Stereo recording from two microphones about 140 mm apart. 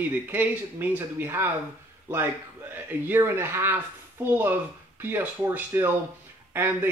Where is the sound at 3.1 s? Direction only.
15° right (ahead or behind).